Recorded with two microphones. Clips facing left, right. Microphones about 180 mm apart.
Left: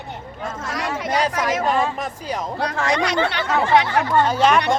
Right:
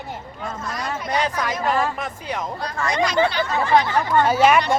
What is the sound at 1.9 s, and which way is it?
Speech, 35° left (ahead or behind).